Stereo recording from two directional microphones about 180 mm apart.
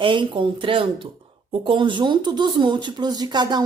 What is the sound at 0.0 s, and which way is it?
Speech, 25° right (ahead or behind).